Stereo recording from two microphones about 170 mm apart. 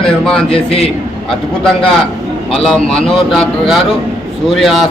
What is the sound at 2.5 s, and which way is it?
A man's voice, centre (ahead or behind).